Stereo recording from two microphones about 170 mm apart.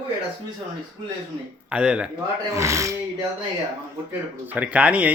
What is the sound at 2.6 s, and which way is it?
Speech, 15° right (ahead or behind).